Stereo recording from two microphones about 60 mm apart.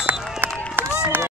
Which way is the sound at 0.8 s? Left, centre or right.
Right.